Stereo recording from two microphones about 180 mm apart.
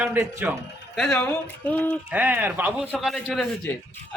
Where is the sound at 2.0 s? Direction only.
10° right (ahead or behind).